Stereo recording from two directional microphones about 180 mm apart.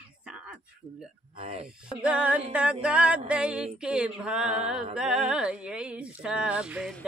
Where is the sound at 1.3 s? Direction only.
35° right (ahead or behind).